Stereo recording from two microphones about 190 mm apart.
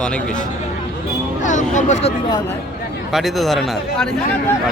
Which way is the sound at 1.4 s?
40° left (ahead or behind).